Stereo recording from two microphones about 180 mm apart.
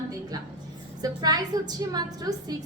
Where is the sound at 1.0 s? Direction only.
20° right (ahead or behind).